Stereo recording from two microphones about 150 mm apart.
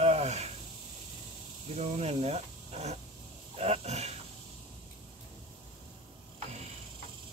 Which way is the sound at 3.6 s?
45° right (ahead or behind).